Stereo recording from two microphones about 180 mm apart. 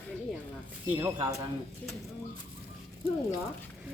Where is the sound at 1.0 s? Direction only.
15° right (ahead or behind).